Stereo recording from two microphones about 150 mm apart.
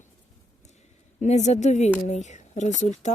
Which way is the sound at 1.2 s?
50° left (ahead or behind).